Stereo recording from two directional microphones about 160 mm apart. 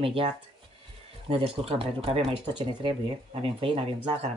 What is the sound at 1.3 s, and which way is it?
Speech, 40° right (ahead or behind).